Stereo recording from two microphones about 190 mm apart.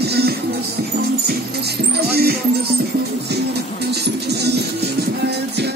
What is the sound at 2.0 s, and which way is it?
Music, 55° right (ahead or behind).